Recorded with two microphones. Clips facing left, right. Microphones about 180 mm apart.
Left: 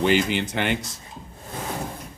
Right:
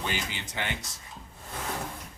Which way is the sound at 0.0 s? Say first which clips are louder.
Left 14 dB; 70° left (ahead or behind).